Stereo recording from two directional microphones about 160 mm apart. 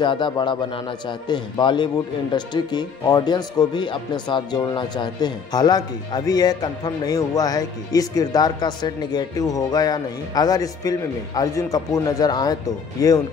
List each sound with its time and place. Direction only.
0.0 s speech: 30° left (ahead or behind)